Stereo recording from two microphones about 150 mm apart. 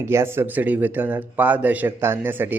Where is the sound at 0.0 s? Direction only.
15° right (ahead or behind).